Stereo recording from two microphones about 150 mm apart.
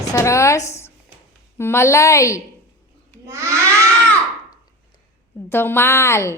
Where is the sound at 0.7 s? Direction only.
15° left (ahead or behind).